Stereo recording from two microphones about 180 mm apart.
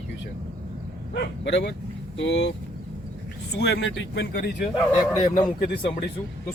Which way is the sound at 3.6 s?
75° left (ahead or behind).